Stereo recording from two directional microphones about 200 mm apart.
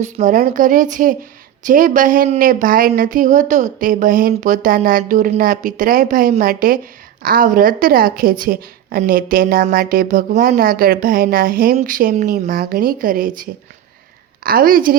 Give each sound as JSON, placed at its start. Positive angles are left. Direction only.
{"t": 0.0, "sound": "speech", "side_deg": -40}